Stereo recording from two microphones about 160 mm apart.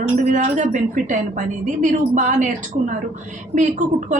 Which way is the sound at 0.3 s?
50° right (ahead or behind).